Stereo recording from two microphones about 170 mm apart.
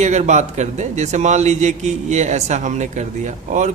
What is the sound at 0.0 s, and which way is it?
A man's voice, 40° right (ahead or behind).